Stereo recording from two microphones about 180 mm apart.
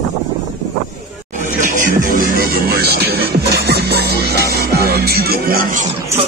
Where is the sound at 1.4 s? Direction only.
45° right (ahead or behind).